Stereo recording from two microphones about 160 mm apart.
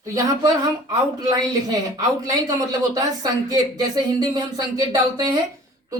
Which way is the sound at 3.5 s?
25° right (ahead or behind).